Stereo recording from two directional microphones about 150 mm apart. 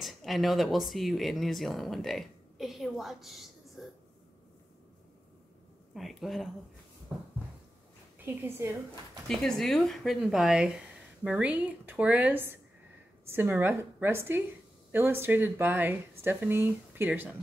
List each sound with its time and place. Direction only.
0.0 s speech: centre (ahead or behind)
5.9 s speech: centre (ahead or behind)
8.4 s speech: 15° right (ahead or behind)
9.3 s speech: 5° left (ahead or behind); by 17.3 s 15° right (ahead or behind)